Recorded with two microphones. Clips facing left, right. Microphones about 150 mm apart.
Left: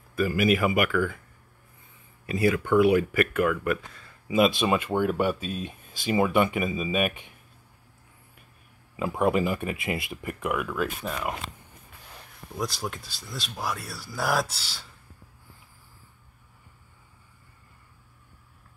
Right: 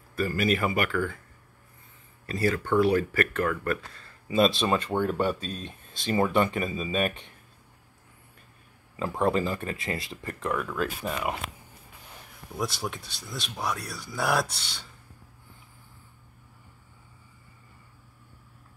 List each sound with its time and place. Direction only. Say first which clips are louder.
0.4 s speech: left 3 dB; 10° left (ahead or behind)
2.2 s speech: left 3 dB; 15° left (ahead or behind)
8.9 s speech: left 1 dB; 10° left (ahead or behind)
11.0 s speech: right 1 dB; 5° right (ahead or behind)
12.5 s speech: even; centre (ahead or behind)